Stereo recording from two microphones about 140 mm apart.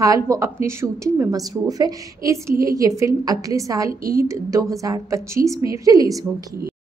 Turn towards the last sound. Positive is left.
turn(degrees=-25)  # may be behind; listen again after turning